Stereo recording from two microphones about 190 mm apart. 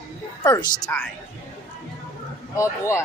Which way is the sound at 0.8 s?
10° left (ahead or behind).